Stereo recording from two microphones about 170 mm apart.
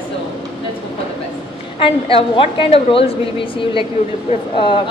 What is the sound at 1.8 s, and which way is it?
A woman's voice, 30° left (ahead or behind).